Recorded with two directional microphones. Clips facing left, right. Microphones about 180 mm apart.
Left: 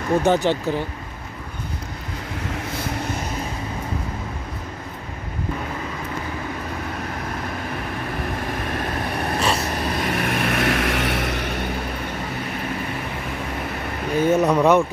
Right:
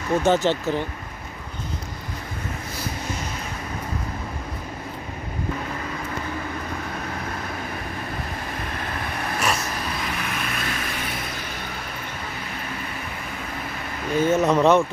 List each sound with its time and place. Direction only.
0.2 s speech: 15° left (ahead or behind)
9.2 s a sound: 30° left (ahead or behind)
10.0 s vehicle: 60° left (ahead or behind); by 11.4 s 75° left (ahead or behind)
14.2 s speech: 15° left (ahead or behind)